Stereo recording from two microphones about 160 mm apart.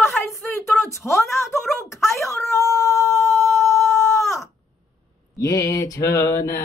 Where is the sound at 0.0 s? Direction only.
15° left (ahead or behind).